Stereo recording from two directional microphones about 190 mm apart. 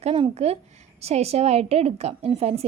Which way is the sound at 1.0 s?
35° right (ahead or behind).